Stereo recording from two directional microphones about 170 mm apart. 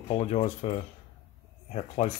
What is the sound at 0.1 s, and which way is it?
Speech, 40° left (ahead or behind).